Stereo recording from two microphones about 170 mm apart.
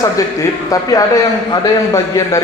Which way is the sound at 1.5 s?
20° left (ahead or behind).